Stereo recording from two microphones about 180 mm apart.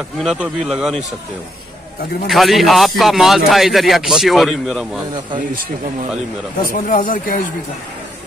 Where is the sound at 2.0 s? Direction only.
60° left (ahead or behind).